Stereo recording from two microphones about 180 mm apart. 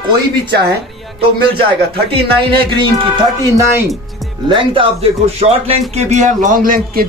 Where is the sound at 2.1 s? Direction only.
30° right (ahead or behind).